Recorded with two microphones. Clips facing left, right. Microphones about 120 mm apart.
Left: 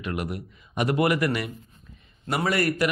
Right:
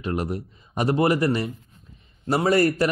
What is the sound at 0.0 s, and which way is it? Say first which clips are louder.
Speech: right 4 dB; 35° right (ahead or behind).